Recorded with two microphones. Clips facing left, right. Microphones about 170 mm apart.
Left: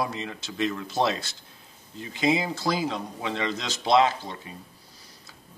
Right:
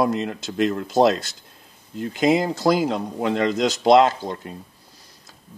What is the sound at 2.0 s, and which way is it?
Speech, 50° right (ahead or behind).